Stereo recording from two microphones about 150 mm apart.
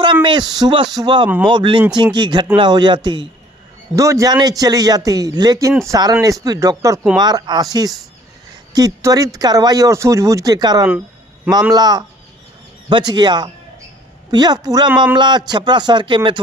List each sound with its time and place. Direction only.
0.0 s a man's voice: 30° right (ahead or behind)